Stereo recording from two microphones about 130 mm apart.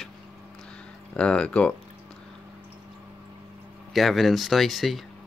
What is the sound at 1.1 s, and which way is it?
Speech, 10° left (ahead or behind).